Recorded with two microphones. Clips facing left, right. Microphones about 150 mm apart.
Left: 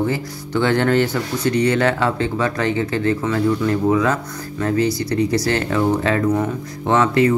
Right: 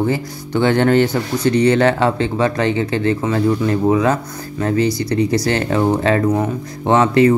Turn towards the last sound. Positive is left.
turn(degrees=-20)  # may be behind; listen again after turning